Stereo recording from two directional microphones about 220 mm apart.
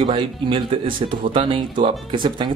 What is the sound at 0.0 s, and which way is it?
Speech, 20° right (ahead or behind).